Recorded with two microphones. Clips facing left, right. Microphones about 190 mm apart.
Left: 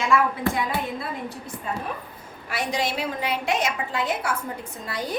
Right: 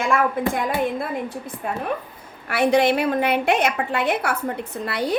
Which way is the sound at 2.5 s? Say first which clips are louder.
Right 10 dB; 60° right (ahead or behind).